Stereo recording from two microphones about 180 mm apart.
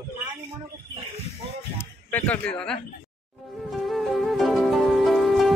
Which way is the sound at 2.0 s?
10° left (ahead or behind).